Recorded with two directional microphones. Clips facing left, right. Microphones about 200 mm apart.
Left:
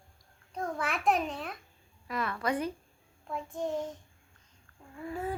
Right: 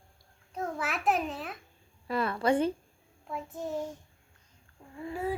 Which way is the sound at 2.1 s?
30° right (ahead or behind).